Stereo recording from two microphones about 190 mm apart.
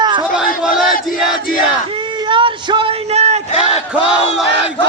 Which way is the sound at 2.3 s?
25° right (ahead or behind).